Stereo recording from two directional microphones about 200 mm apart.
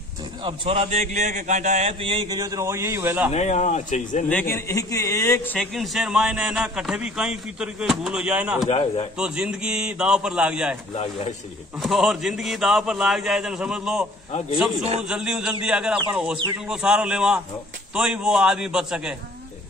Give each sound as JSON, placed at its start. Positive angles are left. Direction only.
{"t": 0.4, "sound": "a man's voice", "side_deg": -25}
{"t": 3.3, "sound": "speech", "side_deg": 35}
{"t": 4.3, "sound": "a man's voice", "side_deg": 10}
{"t": 8.6, "sound": "a man's voice", "side_deg": 25}
{"t": 9.2, "sound": "a man's voice", "side_deg": -5}
{"t": 11.8, "sound": "a man's voice", "side_deg": 0}
{"t": 14.8, "sound": "a man's voice", "side_deg": -35}
{"t": 15.0, "sound": "a man's voice", "side_deg": -5}